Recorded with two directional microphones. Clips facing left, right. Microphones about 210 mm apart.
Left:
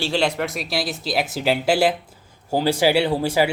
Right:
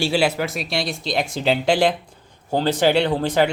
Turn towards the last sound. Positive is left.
turn(degrees=10)  # may be behind; listen again after turning